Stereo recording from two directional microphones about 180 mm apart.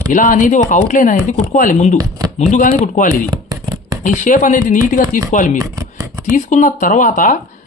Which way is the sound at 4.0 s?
45° left (ahead or behind).